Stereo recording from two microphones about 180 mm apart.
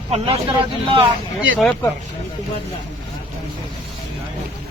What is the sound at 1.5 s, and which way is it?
Speech, 5° left (ahead or behind).